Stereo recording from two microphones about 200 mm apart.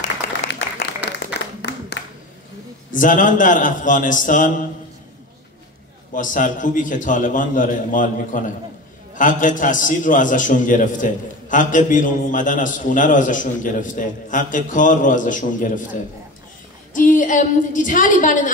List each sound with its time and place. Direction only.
0.5 s applause: 65° left (ahead or behind)
1.4 s a sound: 60° left (ahead or behind)
2.9 s a man's voice: 40° left (ahead or behind)
6.1 s a man's voice: 40° left (ahead or behind)
16.9 s a woman's voice: 40° left (ahead or behind)